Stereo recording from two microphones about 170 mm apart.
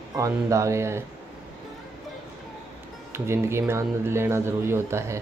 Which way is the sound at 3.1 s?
15° right (ahead or behind).